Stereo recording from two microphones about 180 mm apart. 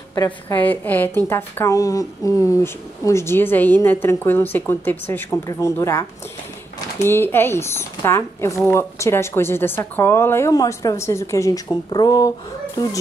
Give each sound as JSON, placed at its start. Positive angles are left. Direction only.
{"t": 0.1, "sound": "a woman's voice", "side_deg": 20}